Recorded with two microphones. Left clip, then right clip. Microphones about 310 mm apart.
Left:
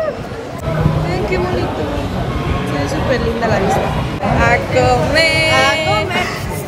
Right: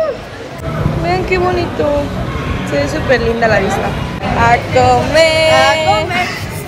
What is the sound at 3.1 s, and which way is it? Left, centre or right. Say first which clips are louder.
Speech: right 6 dB; centre.